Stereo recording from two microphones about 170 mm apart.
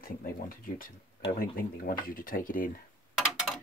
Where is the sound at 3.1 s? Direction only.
Centre (ahead or behind).